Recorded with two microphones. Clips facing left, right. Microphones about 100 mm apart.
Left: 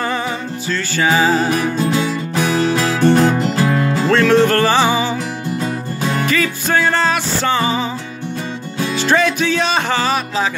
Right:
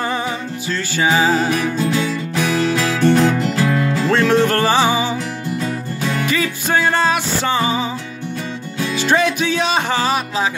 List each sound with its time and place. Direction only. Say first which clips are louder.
0.0 s music: left 1 dB; 15° right (ahead or behind)
1.3 s music: left 1 dB; 35° left (ahead or behind)
4.5 s music: left 1 dB; 10° right (ahead or behind)
5.6 s music: left 2 dB; 35° left (ahead or behind)
6.3 s music: left 1 dB; 15° right (ahead or behind)
9.0 s music: left 1 dB; 10° right (ahead or behind)